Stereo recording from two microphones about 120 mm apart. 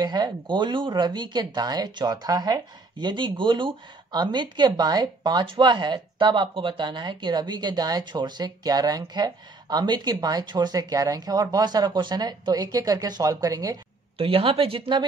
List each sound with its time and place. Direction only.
0.0 s speech: 35° right (ahead or behind)
14.1 s speech: 50° right (ahead or behind)